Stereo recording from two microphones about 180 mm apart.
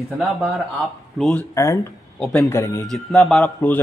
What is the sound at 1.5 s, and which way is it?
Speech, 15° left (ahead or behind).